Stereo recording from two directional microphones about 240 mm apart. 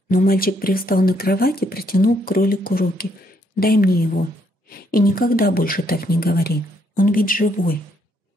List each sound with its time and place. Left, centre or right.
0.1 s speech: left